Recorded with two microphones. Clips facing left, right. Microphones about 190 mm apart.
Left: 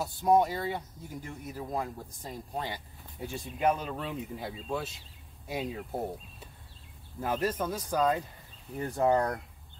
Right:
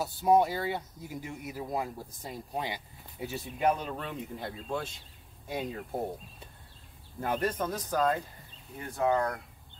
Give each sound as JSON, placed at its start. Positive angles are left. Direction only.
{"t": 0.0, "sound": "speech", "side_deg": -5}
{"t": 7.2, "sound": "speech", "side_deg": 5}
{"t": 8.8, "sound": "speech", "side_deg": 35}